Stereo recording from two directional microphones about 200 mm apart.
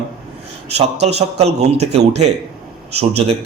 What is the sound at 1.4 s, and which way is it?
A man's voice, 35° right (ahead or behind).